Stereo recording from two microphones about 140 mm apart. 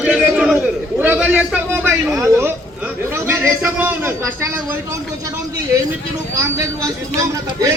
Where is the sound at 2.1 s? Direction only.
20° right (ahead or behind).